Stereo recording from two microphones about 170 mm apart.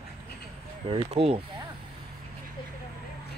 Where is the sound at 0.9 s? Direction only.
35° right (ahead or behind).